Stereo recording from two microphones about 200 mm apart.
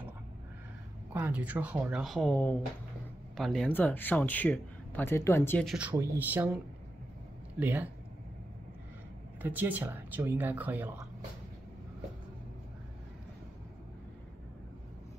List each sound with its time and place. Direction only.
1.1 s speech: 10° right (ahead or behind); by 5.7 s 10° left (ahead or behind)
5.7 s speech: 5° right (ahead or behind)
9.4 s speech: 10° right (ahead or behind)